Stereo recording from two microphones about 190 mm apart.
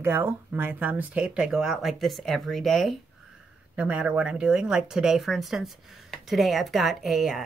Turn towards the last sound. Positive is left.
turn(degrees=0)  # may be behind; listen again after turning